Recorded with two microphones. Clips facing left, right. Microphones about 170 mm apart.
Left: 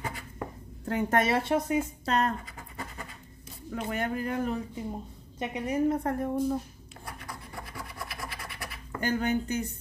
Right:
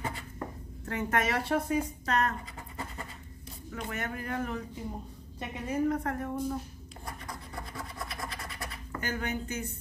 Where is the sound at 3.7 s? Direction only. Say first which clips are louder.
Left 5 dB; 30° left (ahead or behind).